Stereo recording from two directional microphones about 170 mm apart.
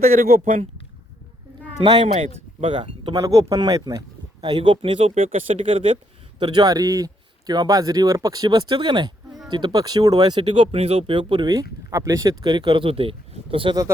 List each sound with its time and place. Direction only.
0.2 s speech: 55° right (ahead or behind)
2.6 s speech: 30° right (ahead or behind)
3.2 s speech: 20° right (ahead or behind)